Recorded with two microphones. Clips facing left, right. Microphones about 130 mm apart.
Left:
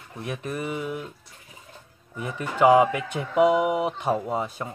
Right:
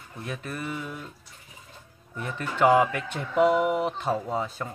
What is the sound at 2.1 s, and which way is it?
Speech, 10° left (ahead or behind).